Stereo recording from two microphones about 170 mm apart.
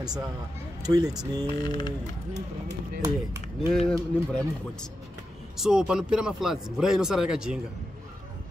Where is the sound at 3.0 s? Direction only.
15° right (ahead or behind).